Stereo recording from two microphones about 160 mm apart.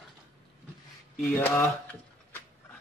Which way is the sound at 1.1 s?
10° left (ahead or behind).